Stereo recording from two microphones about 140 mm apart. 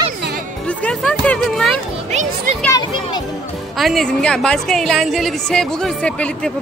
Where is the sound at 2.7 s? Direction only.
30° left (ahead or behind).